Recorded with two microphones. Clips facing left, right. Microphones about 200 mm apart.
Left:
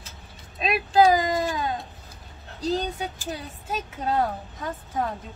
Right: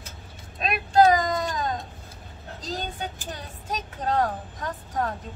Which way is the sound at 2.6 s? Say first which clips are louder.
Left 6 dB; 5° left (ahead or behind).